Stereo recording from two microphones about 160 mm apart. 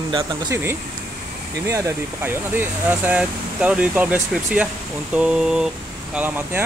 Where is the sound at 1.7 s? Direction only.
15° right (ahead or behind).